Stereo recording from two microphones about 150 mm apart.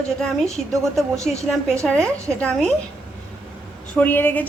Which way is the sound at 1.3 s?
Centre (ahead or behind).